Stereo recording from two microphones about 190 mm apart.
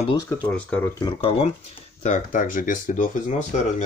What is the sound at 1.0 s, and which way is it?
Speech, 25° left (ahead or behind).